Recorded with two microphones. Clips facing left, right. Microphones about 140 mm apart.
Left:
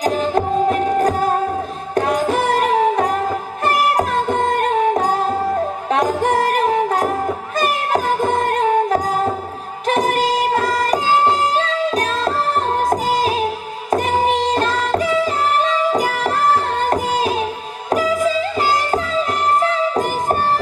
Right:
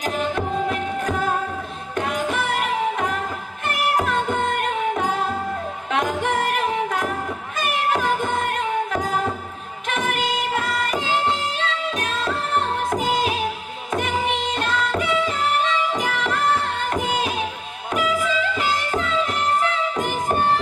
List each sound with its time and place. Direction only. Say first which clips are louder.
0.0 s music: left 6 dB; 35° left (ahead or behind)
2.0 s carnatic music: left 7 dB; 35° left (ahead or behind)
3.6 s music: left 5 dB; 40° left (ahead or behind)